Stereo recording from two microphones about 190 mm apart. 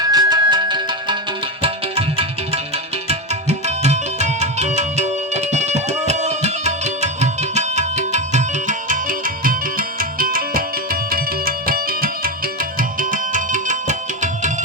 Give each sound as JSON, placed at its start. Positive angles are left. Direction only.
{"t": 0.0, "sound": "music", "side_deg": -20}
{"t": 1.6, "sound": "tabla", "side_deg": -30}
{"t": 3.7, "sound": "music", "side_deg": -35}